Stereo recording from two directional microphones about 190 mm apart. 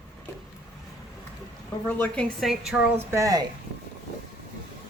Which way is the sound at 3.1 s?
15° right (ahead or behind).